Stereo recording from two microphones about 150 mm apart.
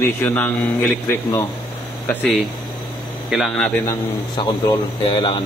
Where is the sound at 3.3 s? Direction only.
Centre (ahead or behind).